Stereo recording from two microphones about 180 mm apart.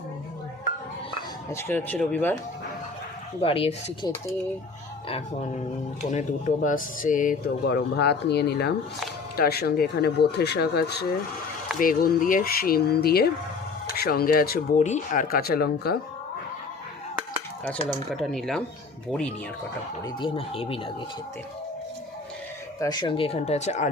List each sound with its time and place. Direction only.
1.5 s speech: 10° left (ahead or behind)
3.4 s speech: 30° left (ahead or behind); by 7.5 s 45° left (ahead or behind)
7.6 s speech: 70° left (ahead or behind)
11.8 s speech: 50° left (ahead or behind)
14.8 s speech: 45° left (ahead or behind); by 16.0 s 60° left (ahead or behind)
17.8 s speech: centre (ahead or behind)
20.1 s speech: 25° left (ahead or behind)
22.8 s speech: 25° left (ahead or behind); by 23.9 s 40° left (ahead or behind)